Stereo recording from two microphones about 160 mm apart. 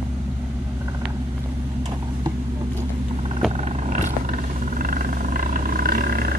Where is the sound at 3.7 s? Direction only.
50° right (ahead or behind).